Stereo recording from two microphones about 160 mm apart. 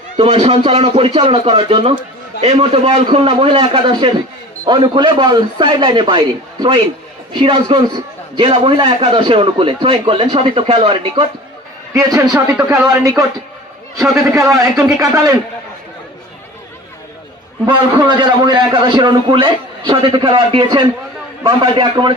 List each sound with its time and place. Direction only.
0.2 s a man's voice: 40° right (ahead or behind)
11.9 s a man's voice: 20° right (ahead or behind)
12.5 s speech: 10° right (ahead or behind)
12.9 s a man's voice: 20° right (ahead or behind)
14.8 s a man's voice: 20° right (ahead or behind)
17.7 s a man's voice: 30° right (ahead or behind)